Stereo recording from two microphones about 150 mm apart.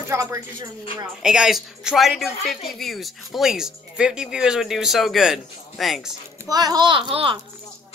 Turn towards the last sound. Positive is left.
turn(degrees=-35)  # may be behind; listen again after turning